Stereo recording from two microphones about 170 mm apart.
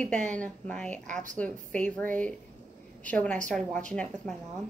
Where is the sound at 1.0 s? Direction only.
50° right (ahead or behind).